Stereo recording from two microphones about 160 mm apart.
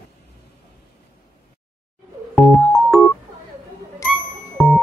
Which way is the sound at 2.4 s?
Centre (ahead or behind).